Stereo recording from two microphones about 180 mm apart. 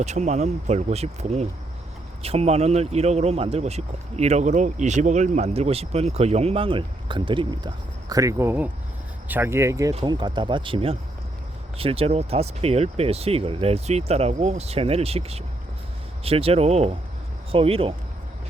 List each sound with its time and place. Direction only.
0.0 s speech: 40° right (ahead or behind)